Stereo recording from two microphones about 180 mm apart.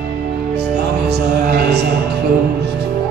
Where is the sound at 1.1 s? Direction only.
65° right (ahead or behind).